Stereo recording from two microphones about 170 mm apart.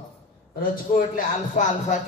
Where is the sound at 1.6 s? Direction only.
45° left (ahead or behind).